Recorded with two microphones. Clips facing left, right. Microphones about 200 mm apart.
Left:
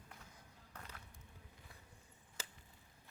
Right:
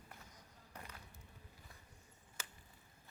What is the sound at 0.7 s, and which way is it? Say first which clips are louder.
Music: right 1 dB; 10° right (ahead or behind).